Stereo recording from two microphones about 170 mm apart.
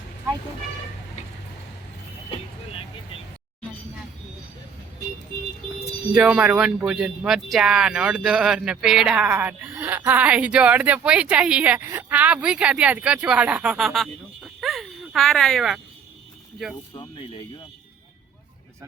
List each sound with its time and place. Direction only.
6.1 s speech: 5° right (ahead or behind)
16.9 s speech: 30° left (ahead or behind)